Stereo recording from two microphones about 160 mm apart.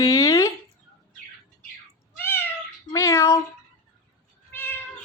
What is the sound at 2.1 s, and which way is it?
Cat, 15° left (ahead or behind).